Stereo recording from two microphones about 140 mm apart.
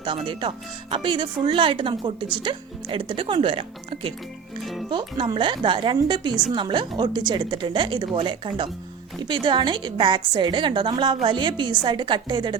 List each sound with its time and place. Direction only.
0.0 s speech: 35° right (ahead or behind)
4.6 s music: centre (ahead or behind)
4.9 s speech: 35° right (ahead or behind)